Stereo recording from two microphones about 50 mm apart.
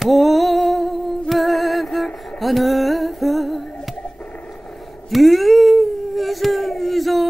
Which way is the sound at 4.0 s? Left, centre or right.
Left.